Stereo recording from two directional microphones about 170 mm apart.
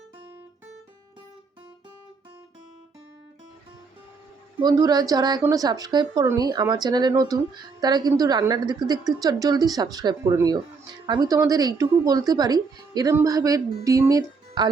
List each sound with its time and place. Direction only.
4.6 s speech: 25° right (ahead or behind)